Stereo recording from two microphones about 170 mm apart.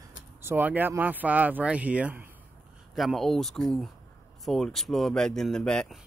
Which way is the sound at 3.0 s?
Centre (ahead or behind).